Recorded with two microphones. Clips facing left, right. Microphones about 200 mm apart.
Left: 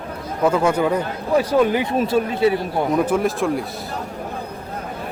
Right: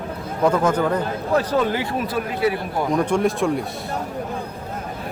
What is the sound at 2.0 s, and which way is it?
Speech, 25° left (ahead or behind).